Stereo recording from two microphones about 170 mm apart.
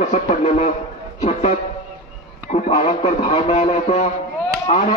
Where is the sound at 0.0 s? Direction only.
40° left (ahead or behind).